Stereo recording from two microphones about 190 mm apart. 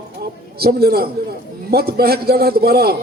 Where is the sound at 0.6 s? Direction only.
55° right (ahead or behind).